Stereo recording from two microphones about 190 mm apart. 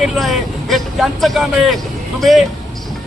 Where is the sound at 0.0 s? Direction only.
Centre (ahead or behind).